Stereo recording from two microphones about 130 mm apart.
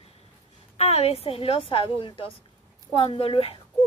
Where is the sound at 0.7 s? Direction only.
55° left (ahead or behind).